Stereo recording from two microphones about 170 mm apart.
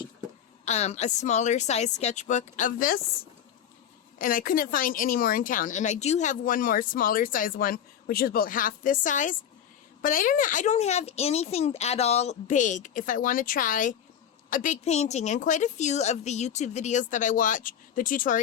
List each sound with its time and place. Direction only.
0.6 s speech: 40° left (ahead or behind); by 3.0 s 55° left (ahead or behind)
4.2 s speech: 55° left (ahead or behind)